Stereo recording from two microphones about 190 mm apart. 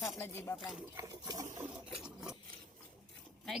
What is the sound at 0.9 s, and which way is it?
Speech, 15° right (ahead or behind).